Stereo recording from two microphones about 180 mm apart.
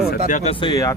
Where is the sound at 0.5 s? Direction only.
25° left (ahead or behind).